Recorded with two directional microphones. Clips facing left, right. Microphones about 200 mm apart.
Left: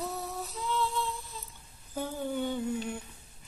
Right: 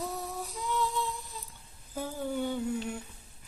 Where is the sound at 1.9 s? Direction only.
5° right (ahead or behind).